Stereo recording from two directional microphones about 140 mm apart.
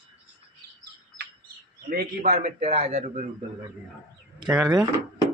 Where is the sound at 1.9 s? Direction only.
75° right (ahead or behind); by 3.3 s 45° right (ahead or behind).